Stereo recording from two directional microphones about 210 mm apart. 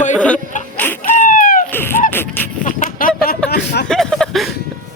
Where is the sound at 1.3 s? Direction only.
40° left (ahead or behind).